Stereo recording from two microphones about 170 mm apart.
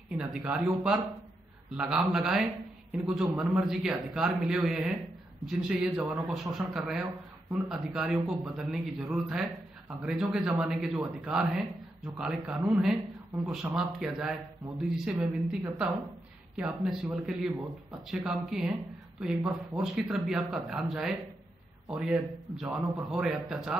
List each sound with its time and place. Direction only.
0.2 s a man's voice: 5° right (ahead or behind)